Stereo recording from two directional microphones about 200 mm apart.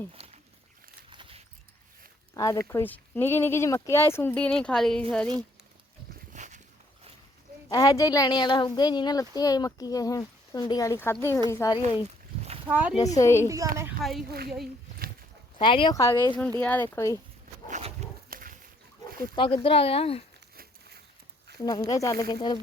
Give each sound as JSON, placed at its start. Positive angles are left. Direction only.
{"t": 0.2, "sound": "a sound", "side_deg": -30}
{"t": 2.3, "sound": "speech", "side_deg": 15}
{"t": 6.3, "sound": "walk", "side_deg": -35}
{"t": 7.7, "sound": "a woman's voice", "side_deg": 20}
{"t": 12.4, "sound": "a sound", "side_deg": -30}
{"t": 12.6, "sound": "speech", "side_deg": -10}
{"t": 13.1, "sound": "speech", "side_deg": 15}
{"t": 14.0, "sound": "speech", "side_deg": 0}
{"t": 14.3, "sound": "a child's voice", "side_deg": -50}
{"t": 15.5, "sound": "a woman's voice", "side_deg": 25}
{"t": 17.7, "sound": "dog", "side_deg": -35}
{"t": 19.4, "sound": "a woman's voice", "side_deg": 25}
{"t": 21.6, "sound": "speech", "side_deg": 20}